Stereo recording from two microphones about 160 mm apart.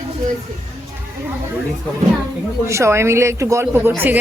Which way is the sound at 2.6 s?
15° right (ahead or behind).